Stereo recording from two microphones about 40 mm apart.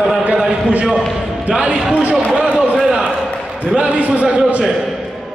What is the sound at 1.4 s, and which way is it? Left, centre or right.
Speech, right.